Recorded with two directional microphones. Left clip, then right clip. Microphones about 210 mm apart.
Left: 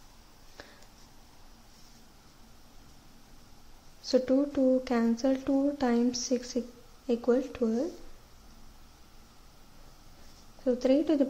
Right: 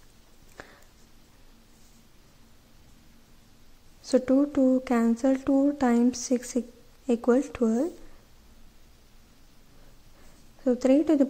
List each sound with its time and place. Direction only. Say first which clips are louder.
0.6 s a sound: right 4 dB; 15° right (ahead or behind)
4.1 s a woman's voice: right 3 dB; 10° right (ahead or behind)
10.6 s a woman's voice: right 3 dB; 15° right (ahead or behind)